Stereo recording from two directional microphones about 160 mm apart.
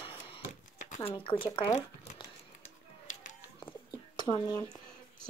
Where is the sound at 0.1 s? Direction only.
35° left (ahead or behind).